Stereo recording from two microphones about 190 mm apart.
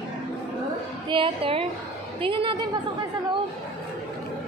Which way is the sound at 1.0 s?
25° right (ahead or behind).